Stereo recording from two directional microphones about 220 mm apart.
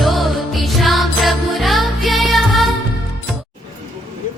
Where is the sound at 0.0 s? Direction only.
Centre (ahead or behind).